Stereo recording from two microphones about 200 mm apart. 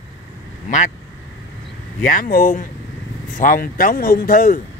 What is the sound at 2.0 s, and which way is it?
Speech, 45° left (ahead or behind).